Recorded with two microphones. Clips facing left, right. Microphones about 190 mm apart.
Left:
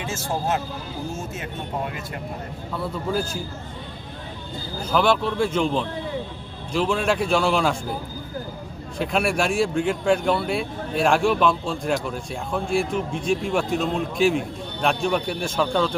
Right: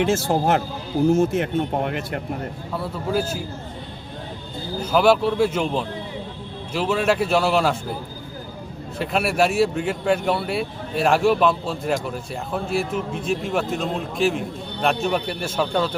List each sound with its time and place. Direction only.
0.0 s speech: 65° right (ahead or behind)
3.1 s speech: 5° right (ahead or behind)
4.8 s speech: 10° right (ahead or behind)
9.0 s speech: 5° right (ahead or behind)